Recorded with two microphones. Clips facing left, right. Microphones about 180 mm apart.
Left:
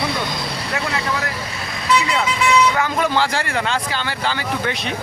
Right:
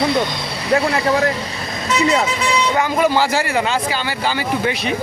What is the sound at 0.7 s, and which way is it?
Speech, 30° right (ahead or behind).